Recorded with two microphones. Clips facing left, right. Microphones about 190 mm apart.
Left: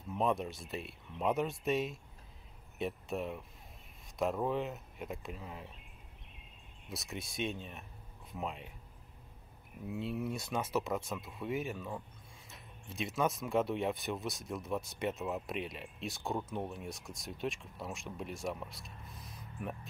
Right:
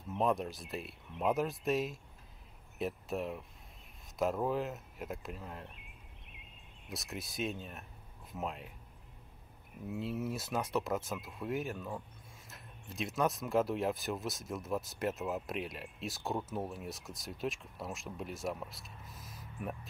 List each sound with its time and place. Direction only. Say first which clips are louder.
0.1 s speech: right 1 dB; centre (ahead or behind)
6.9 s speech: even; centre (ahead or behind)
9.8 s speech: even; centre (ahead or behind)